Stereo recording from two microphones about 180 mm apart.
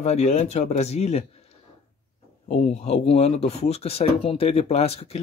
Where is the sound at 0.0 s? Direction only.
40° left (ahead or behind).